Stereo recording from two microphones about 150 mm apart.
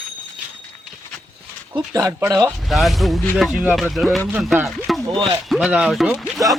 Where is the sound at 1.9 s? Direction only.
20° right (ahead or behind).